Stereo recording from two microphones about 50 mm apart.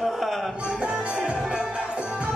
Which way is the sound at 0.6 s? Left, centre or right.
Centre.